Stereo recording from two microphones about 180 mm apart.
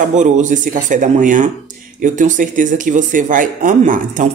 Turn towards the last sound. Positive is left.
turn(degrees=-45)  # may be behind; listen again after turning